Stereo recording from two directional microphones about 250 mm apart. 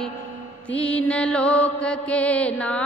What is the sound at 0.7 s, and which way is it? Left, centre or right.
Mantra, centre.